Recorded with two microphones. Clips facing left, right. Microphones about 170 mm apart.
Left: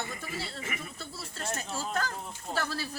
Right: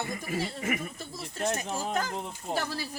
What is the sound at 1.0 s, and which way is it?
Speech, 15° right (ahead or behind).